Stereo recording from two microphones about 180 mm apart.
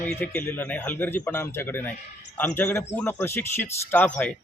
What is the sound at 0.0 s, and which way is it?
Speech, 10° left (ahead or behind).